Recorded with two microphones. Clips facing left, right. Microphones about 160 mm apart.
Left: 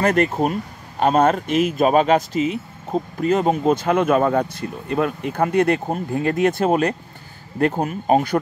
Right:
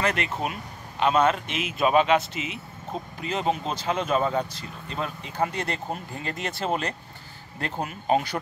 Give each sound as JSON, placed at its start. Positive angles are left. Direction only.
{"t": 0.0, "sound": "speech", "side_deg": 45}